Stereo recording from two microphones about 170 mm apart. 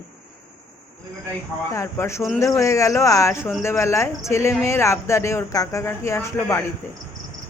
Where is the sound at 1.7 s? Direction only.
15° left (ahead or behind).